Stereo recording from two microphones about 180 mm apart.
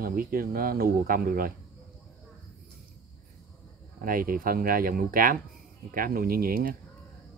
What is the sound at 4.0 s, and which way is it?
Speech, 50° right (ahead or behind).